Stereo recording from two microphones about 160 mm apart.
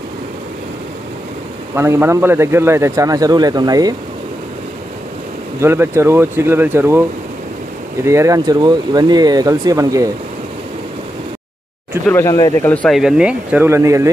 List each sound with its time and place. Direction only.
1.8 s speech: 15° right (ahead or behind)
5.6 s speech: 15° right (ahead or behind)
12.1 s speech: 20° left (ahead or behind)
12.6 s speech: 5° left (ahead or behind); by 14.1 s 20° right (ahead or behind)